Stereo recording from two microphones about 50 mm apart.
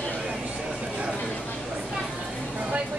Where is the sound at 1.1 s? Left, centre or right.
Left.